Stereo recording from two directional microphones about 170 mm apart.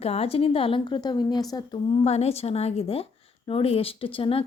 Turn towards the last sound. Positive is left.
turn(degrees=30)  # may be behind; listen again after turning